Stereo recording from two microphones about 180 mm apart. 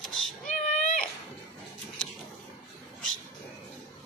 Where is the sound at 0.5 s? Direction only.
45° left (ahead or behind).